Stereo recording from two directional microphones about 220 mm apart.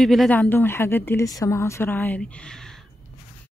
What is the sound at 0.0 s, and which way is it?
Speech, centre (ahead or behind).